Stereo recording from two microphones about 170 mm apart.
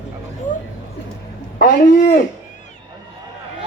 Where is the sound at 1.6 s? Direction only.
55° left (ahead or behind).